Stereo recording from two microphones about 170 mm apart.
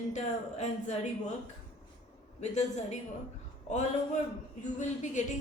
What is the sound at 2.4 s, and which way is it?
Speech, 40° left (ahead or behind).